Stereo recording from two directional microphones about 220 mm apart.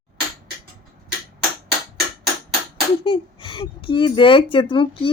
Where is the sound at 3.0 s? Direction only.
20° left (ahead or behind).